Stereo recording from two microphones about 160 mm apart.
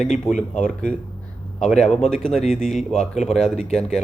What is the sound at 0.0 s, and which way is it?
Speech, 50° left (ahead or behind).